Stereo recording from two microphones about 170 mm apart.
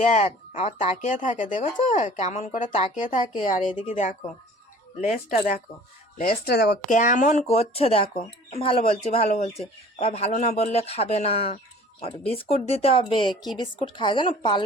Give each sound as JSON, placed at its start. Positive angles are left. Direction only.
{"t": 0.1, "sound": "speech", "side_deg": 45}
{"t": 6.4, "sound": "speech", "side_deg": 70}
{"t": 6.9, "sound": "a woman's voice", "side_deg": 45}